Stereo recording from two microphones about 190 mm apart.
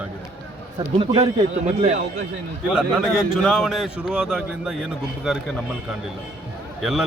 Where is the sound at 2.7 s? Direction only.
5° right (ahead or behind).